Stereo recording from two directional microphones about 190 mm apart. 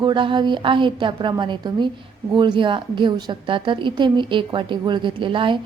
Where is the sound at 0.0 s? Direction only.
25° right (ahead or behind).